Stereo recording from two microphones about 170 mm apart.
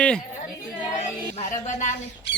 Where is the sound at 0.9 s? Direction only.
45° left (ahead or behind).